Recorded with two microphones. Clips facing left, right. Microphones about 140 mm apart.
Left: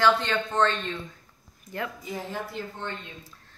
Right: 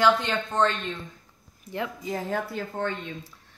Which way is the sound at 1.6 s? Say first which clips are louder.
Right 2 dB; 25° right (ahead or behind).